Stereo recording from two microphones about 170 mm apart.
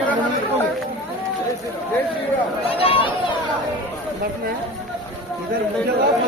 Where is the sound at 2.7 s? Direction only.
35° left (ahead or behind).